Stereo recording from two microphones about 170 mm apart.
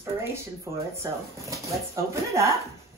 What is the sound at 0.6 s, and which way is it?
Speech, 15° right (ahead or behind).